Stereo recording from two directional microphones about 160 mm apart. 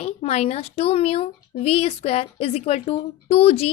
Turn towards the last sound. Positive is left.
turn(degrees=40)  # may be behind; listen again after turning